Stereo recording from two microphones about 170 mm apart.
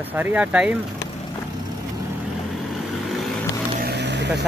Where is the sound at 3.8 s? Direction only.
85° right.